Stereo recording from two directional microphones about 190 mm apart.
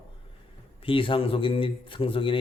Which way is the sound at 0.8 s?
25° left (ahead or behind).